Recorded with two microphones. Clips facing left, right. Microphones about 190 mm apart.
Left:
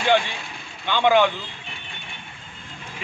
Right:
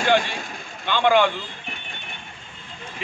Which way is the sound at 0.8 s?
15° left (ahead or behind).